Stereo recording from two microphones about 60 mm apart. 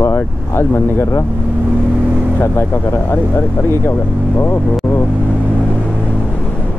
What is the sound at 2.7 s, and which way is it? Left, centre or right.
Speech, left.